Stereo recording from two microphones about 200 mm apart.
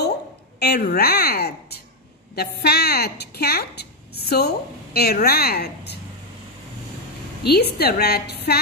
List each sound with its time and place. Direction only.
0.6 s a woman's voice: 55° left (ahead or behind)
7.4 s a woman's voice: 55° left (ahead or behind)